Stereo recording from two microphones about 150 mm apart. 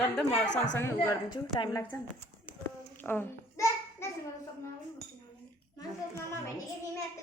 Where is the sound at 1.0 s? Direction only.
30° left (ahead or behind).